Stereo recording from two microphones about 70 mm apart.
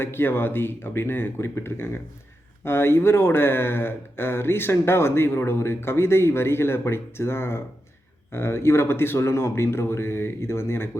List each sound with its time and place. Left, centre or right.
0.0 s speech: left